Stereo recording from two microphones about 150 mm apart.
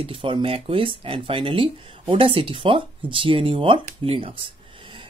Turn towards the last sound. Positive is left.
turn(degrees=-35)  # may be behind; listen again after turning